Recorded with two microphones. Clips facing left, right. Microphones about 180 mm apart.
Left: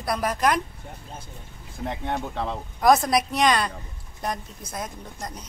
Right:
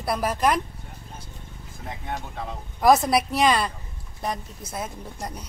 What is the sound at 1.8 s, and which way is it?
Speech, 70° left (ahead or behind).